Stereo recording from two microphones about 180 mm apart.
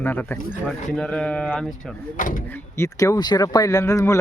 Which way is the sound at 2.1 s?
50° left (ahead or behind).